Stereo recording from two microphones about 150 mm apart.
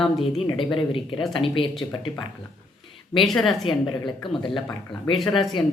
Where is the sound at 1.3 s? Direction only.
35° left (ahead or behind).